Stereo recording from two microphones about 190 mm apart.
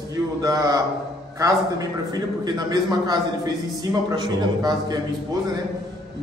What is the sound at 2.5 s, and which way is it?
A man's voice, 20° right (ahead or behind).